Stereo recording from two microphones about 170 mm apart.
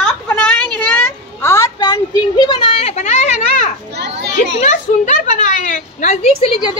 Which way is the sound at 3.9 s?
80° right.